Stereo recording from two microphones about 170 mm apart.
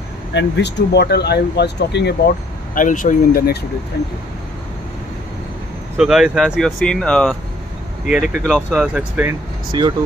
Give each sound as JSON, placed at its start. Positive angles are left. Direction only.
{"t": 0.3, "sound": "speech", "side_deg": 90}
{"t": 2.7, "sound": "speech", "side_deg": 50}
{"t": 5.9, "sound": "speech", "side_deg": -5}
{"t": 9.7, "sound": "speech", "side_deg": -25}